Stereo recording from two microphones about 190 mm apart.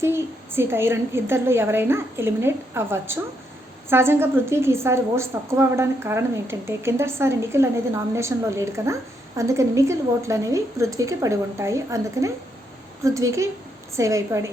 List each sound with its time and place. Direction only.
0.0 s a woman's voice: 10° right (ahead or behind)